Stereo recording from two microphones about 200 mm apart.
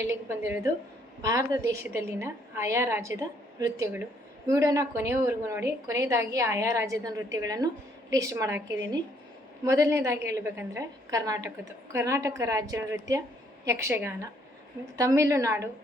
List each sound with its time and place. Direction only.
0.1 s a woman's voice: 10° right (ahead or behind)
9.6 s a woman's voice: 15° right (ahead or behind)